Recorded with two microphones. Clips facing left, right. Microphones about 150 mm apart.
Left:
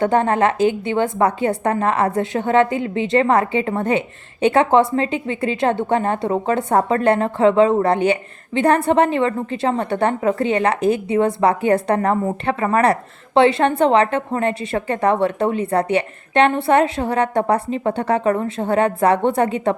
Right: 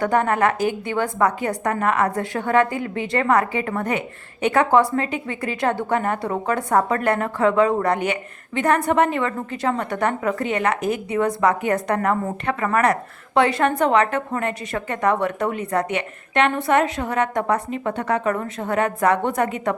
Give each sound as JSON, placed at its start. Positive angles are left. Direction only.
{"t": 0.0, "sound": "a woman's voice", "side_deg": 25}